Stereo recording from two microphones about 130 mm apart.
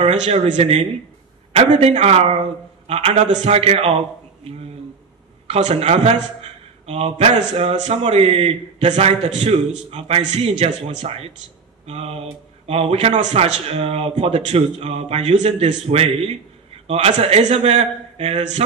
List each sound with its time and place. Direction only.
0.0 s a man's voice: 55° right (ahead or behind)
5.5 s a man's voice: 55° right (ahead or behind)